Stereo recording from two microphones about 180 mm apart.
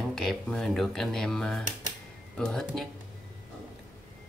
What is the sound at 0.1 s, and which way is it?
Speech, centre (ahead or behind).